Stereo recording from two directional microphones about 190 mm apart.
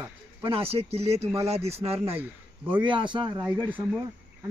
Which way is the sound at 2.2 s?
10° right (ahead or behind).